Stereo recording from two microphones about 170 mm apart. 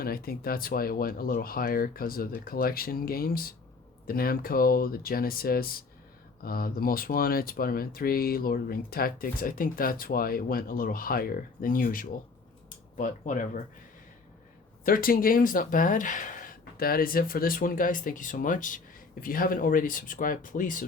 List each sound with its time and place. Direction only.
0.0 s speech: 60° left (ahead or behind)
14.8 s speech: 55° left (ahead or behind)